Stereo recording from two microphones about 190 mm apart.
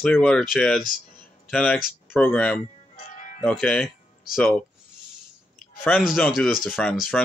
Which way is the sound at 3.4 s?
5° left (ahead or behind).